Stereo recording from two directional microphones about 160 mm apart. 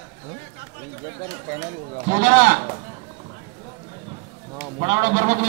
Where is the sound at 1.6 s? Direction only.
50° right (ahead or behind).